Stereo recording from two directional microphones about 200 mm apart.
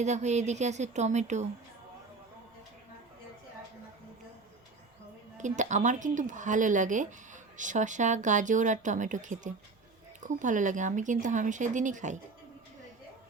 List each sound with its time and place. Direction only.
0.0 s speech: 35° right (ahead or behind)
5.4 s speech: 35° right (ahead or behind)